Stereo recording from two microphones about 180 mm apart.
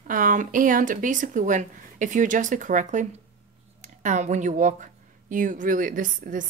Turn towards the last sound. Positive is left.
turn(degrees=-50)  # may be behind; listen again after turning